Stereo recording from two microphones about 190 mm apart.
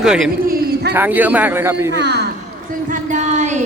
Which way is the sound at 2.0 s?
60° right (ahead or behind).